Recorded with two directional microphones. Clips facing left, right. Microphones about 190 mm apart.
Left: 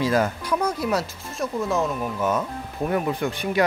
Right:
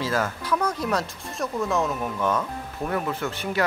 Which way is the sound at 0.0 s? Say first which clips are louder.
Left 4 dB; 15° left (ahead or behind).